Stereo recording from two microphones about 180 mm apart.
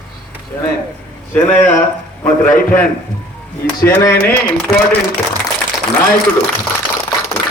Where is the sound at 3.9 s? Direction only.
15° left (ahead or behind).